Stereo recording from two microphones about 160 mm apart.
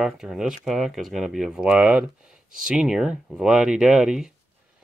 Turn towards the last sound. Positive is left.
turn(degrees=-5)  # may be behind; listen again after turning